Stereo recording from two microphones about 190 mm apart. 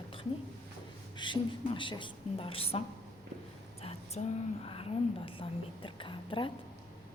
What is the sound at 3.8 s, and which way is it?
A woman's voice, 35° left (ahead or behind).